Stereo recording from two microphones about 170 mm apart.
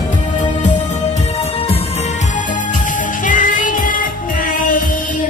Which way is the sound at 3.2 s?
50° left (ahead or behind).